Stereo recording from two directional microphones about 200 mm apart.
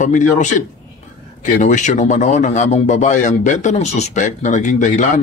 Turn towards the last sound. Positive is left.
turn(degrees=40)  # may be behind; listen again after turning